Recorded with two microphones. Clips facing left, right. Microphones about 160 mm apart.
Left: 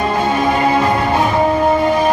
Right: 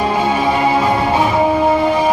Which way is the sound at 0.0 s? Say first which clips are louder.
Even; 5° right (ahead or behind).